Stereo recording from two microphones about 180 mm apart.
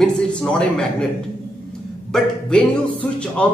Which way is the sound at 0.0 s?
5° left (ahead or behind).